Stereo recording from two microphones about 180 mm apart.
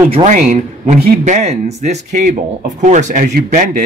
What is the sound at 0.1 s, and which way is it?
Speech, 45° right (ahead or behind).